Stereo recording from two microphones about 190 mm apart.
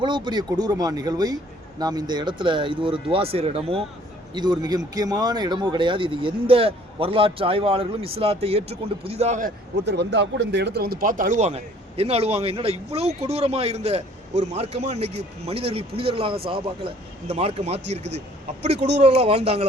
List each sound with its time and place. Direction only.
0.0 s speech: 25° right (ahead or behind)
9.8 s speech: 65° right (ahead or behind); by 18.9 s 35° right (ahead or behind)